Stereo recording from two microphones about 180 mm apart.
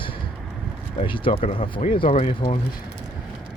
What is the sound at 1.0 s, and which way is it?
Speech, 30° left (ahead or behind).